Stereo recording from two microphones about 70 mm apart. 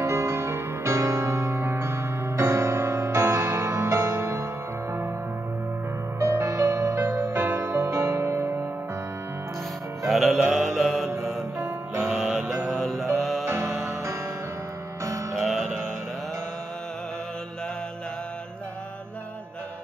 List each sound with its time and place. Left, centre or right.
0.0 s music: right
6.1 s music: right
10.0 s mantra: centre
11.6 s music: right
12.1 s music: centre
13.5 s music: right
15.3 s music: centre